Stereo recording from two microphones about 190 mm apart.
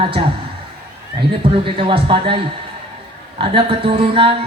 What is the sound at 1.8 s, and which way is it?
Speech, 30° right (ahead or behind).